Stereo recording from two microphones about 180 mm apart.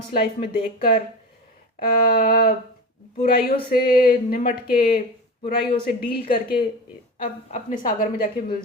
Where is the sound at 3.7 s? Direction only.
55° left (ahead or behind).